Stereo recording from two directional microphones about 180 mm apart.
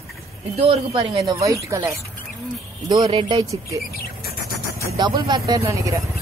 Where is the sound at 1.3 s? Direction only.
20° right (ahead or behind).